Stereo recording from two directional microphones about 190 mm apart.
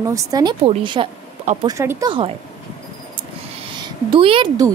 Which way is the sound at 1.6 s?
15° right (ahead or behind).